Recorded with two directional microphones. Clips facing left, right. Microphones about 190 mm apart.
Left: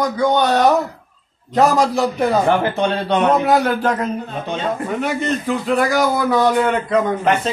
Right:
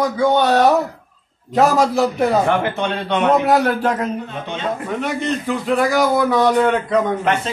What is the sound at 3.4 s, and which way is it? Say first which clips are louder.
A man's voice: even; centre (ahead or behind).